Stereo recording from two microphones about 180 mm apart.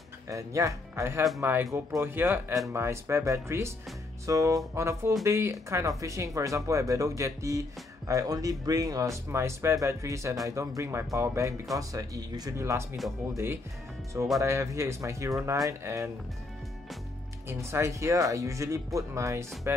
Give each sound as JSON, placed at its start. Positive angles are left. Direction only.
{"t": 0.3, "sound": "speech", "side_deg": -15}
{"t": 12.9, "sound": "speech", "side_deg": 0}
{"t": 14.4, "sound": "speech", "side_deg": -15}
{"t": 17.5, "sound": "speech", "side_deg": -15}